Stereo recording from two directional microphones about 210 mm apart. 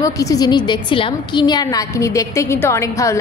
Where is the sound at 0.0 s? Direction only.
15° left (ahead or behind).